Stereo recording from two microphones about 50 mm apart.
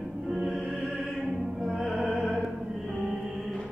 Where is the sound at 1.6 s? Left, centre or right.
Centre.